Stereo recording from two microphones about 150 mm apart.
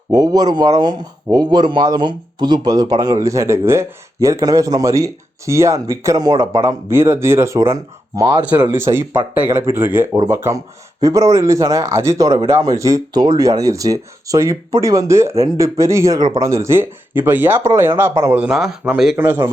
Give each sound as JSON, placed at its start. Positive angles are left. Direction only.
{"t": 0.1, "sound": "speech", "side_deg": -25}
{"t": 8.5, "sound": "speech", "side_deg": -15}
{"t": 19.1, "sound": "speech", "side_deg": -15}